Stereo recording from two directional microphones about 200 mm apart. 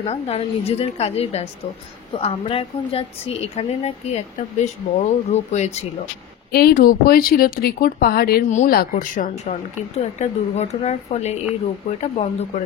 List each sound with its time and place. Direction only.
0.0 s a woman's voice: 30° left (ahead or behind)
6.5 s a woman's voice: 50° left (ahead or behind)